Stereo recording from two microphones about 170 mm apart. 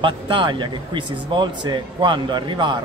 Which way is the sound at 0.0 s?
30° right (ahead or behind).